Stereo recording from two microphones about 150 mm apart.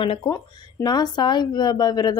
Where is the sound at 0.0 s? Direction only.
35° left (ahead or behind).